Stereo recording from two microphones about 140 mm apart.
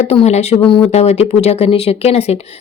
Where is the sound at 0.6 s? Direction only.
40° left (ahead or behind).